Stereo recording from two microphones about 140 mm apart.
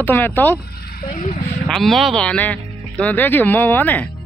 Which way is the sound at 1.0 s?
70° left (ahead or behind).